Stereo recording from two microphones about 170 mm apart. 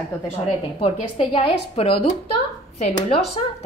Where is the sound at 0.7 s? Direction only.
35° left (ahead or behind).